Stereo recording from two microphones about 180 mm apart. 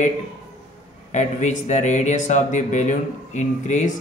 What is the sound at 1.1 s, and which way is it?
Speech, 40° left (ahead or behind).